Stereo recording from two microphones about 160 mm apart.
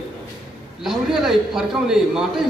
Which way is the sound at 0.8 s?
Centre (ahead or behind).